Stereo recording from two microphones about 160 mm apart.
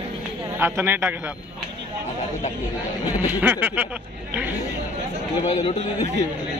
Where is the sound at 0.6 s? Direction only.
15° right (ahead or behind).